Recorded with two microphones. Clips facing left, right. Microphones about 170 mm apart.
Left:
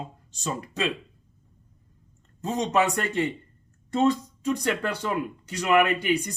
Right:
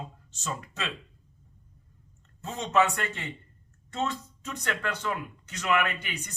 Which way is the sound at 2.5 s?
40° left (ahead or behind).